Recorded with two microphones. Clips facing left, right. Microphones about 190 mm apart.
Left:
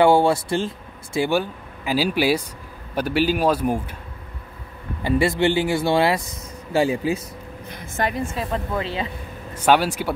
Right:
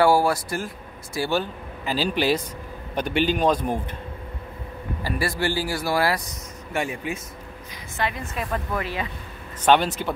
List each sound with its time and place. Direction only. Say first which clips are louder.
0.0 s speech: left 3 dB; 25° left (ahead or behind)
1.3 s speech: left 3 dB; 10° left (ahead or behind)
5.0 s speech: left 7 dB; 25° left (ahead or behind)
9.6 s speech: left 1 dB; 10° left (ahead or behind)